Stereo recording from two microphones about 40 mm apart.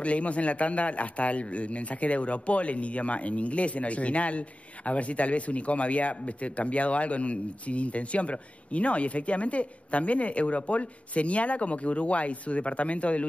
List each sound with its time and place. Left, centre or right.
0.0 s a man's voice: left